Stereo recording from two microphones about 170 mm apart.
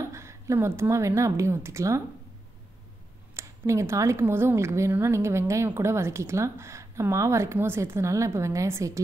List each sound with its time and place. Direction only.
0.1 s speech: 15° right (ahead or behind)
3.3 s speech: 15° right (ahead or behind)